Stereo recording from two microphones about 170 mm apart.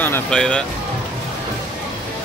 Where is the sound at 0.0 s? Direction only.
10° left (ahead or behind).